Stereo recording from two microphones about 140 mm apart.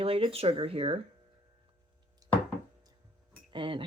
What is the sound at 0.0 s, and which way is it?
Speech, 40° right (ahead or behind).